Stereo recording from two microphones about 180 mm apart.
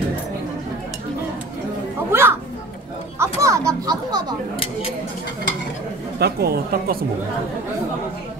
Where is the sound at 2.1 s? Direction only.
15° right (ahead or behind).